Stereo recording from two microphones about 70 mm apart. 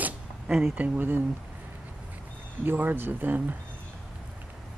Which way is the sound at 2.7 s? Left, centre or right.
Right.